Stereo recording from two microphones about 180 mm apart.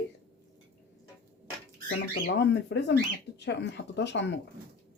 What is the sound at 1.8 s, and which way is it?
Speech, 80° left.